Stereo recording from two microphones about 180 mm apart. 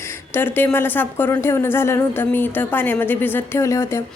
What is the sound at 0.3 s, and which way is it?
A woman's voice, 10° left (ahead or behind).